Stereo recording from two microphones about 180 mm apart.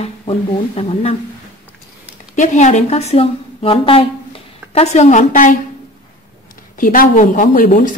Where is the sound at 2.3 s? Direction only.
40° left (ahead or behind).